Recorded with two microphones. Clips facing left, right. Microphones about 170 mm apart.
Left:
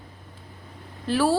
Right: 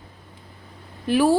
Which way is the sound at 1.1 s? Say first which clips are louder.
Right 4 dB; 15° right (ahead or behind).